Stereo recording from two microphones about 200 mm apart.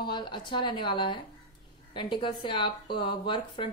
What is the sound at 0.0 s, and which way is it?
A woman's voice, 25° left (ahead or behind).